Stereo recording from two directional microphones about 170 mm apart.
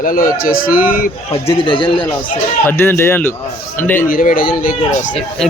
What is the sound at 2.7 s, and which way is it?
Speech, 15° left (ahead or behind).